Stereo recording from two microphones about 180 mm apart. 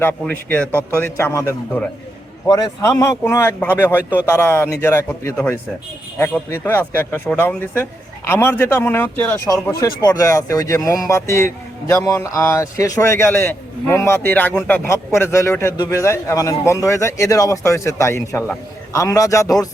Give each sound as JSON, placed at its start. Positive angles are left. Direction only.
{"t": 0.0, "sound": "a man's voice", "side_deg": 10}
{"t": 0.8, "sound": "a man's voice", "side_deg": -15}
{"t": 1.0, "sound": "a man's voice", "side_deg": 15}
{"t": 9.8, "sound": "a man's voice", "side_deg": 20}